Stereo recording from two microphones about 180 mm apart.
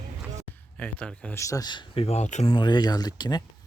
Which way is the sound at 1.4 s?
20° left (ahead or behind).